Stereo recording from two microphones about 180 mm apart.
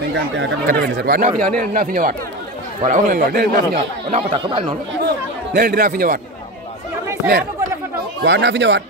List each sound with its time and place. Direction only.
0.7 s a man's voice: 70° right (ahead or behind); by 3.6 s 50° right (ahead or behind)
3.7 s speech: 35° right (ahead or behind)
5.0 s chatter: 60° right (ahead or behind)
8.2 s speech: 75° right (ahead or behind)